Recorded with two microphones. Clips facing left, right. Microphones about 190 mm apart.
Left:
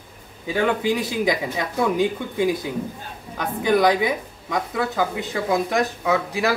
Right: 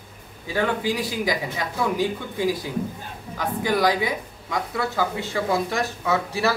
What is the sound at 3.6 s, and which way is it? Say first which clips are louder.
Speech: left 4 dB; 20° left (ahead or behind).